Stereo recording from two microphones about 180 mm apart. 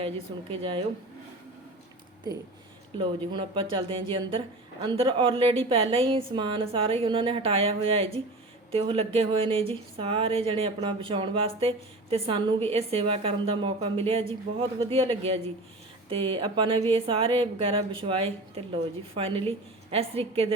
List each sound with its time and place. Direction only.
0.5 s speech: 30° right (ahead or behind)
3.3 s a woman's voice: 30° right (ahead or behind)